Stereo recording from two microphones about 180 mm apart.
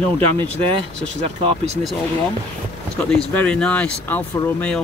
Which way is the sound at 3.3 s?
5° left (ahead or behind).